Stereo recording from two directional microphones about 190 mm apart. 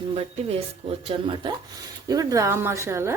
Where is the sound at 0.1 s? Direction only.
30° right (ahead or behind).